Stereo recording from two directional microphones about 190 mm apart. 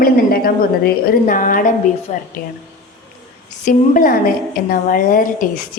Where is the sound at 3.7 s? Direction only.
45° left (ahead or behind).